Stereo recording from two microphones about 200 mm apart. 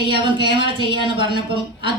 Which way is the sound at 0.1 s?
25° right (ahead or behind).